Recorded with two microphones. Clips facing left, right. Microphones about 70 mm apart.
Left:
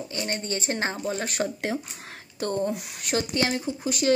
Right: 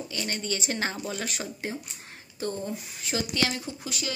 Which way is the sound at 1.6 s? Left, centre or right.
Left.